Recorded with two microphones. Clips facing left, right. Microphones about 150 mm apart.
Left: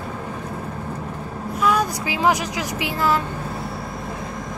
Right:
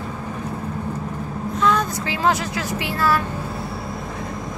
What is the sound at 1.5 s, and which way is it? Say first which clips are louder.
Speech: even; 10° left (ahead or behind).